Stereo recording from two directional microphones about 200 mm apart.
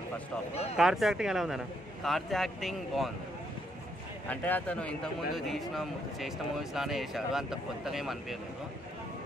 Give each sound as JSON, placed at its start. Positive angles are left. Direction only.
{"t": 0.7, "sound": "a man's voice", "side_deg": 0}
{"t": 4.3, "sound": "a man's voice", "side_deg": 10}